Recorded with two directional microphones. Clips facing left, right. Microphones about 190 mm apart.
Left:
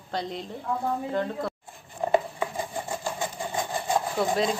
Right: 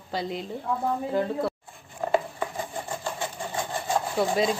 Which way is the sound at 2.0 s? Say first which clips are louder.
Left 1 dB; 20° left (ahead or behind).